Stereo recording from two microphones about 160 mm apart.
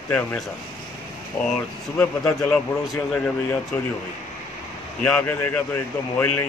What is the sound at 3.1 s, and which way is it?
Speech, 10° left (ahead or behind).